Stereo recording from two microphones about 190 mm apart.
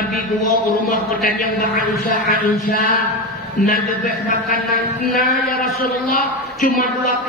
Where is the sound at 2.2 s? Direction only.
45° left (ahead or behind).